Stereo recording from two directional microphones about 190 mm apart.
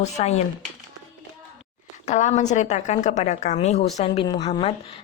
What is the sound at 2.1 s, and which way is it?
A woman's voice, 40° left (ahead or behind).